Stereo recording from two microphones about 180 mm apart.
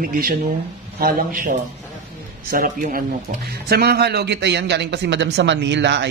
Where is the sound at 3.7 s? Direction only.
60° right (ahead or behind).